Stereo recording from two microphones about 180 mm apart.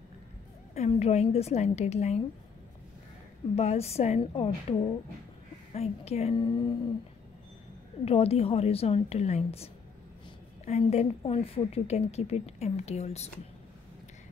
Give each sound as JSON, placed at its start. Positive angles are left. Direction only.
{"t": 0.7, "sound": "a woman's voice", "side_deg": 35}
{"t": 3.5, "sound": "a woman's voice", "side_deg": 35}
{"t": 8.0, "sound": "a woman's voice", "side_deg": 35}